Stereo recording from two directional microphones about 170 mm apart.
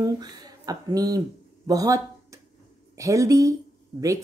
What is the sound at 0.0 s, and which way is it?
Speech, 25° right (ahead or behind).